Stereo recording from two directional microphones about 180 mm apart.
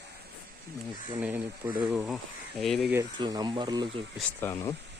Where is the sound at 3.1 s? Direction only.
25° right (ahead or behind).